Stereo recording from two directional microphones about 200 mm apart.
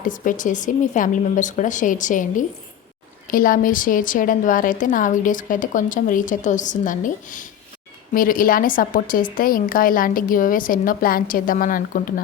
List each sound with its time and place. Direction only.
0.0 s a woman's voice: 40° left (ahead or behind)